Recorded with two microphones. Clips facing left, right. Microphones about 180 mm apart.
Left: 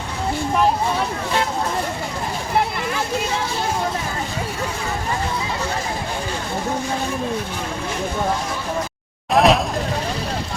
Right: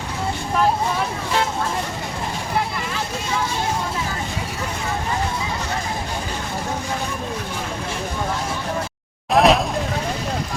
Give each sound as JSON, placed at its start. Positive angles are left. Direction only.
{"t": 9.3, "sound": "vehicle", "side_deg": 0}